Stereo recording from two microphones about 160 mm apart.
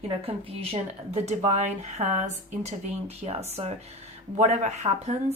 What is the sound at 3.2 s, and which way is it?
A woman's voice, 40° right (ahead or behind).